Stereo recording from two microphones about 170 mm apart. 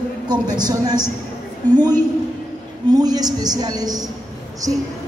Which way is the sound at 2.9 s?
25° right (ahead or behind).